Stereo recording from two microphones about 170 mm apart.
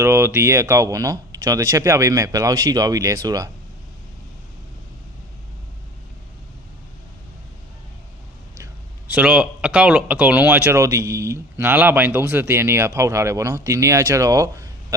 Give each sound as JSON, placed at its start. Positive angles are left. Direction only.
{"t": 0.0, "sound": "speech", "side_deg": -15}
{"t": 8.5, "sound": "speech", "side_deg": -15}